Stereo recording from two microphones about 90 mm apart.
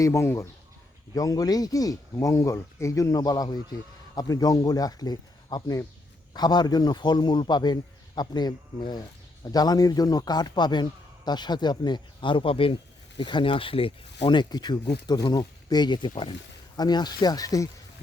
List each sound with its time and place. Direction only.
0.0 s speech: 35° left (ahead or behind); by 16.3 s 65° left (ahead or behind)
16.7 s speech: 50° left (ahead or behind)